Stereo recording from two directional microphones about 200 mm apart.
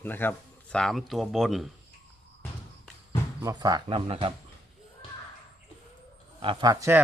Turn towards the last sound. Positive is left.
turn(degrees=-15)  # may be behind; listen again after turning